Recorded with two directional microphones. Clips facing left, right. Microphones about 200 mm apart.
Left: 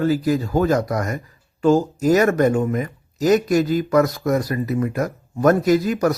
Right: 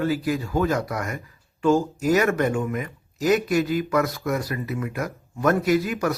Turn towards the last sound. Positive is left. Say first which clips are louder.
# left 4 dB
turn(degrees=40)  # may be behind; listen again after turning